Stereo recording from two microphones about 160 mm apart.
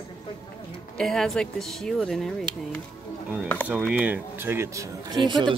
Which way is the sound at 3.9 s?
10° right (ahead or behind).